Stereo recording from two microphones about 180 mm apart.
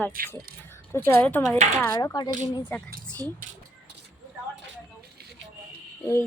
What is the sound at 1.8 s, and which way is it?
Speech, 15° left (ahead or behind).